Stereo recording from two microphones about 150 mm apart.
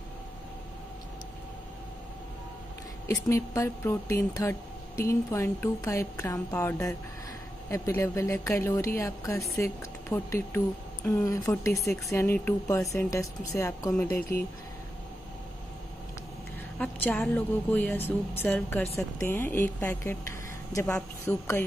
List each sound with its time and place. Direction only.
3.3 s a woman's voice: 20° left (ahead or behind)
16.7 s a woman's voice: 10° left (ahead or behind)